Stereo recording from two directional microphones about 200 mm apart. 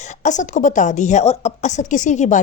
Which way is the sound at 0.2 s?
35° left (ahead or behind).